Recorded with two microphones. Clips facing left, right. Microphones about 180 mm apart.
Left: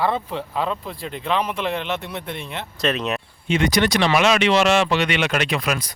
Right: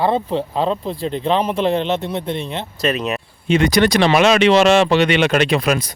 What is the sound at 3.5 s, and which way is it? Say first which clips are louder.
Speech: right 5 dB; 40° right (ahead or behind).